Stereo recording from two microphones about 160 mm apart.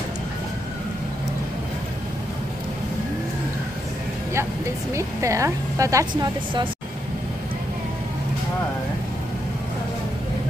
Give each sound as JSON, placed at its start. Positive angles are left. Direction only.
{"t": 4.9, "sound": "a woman's voice", "side_deg": -20}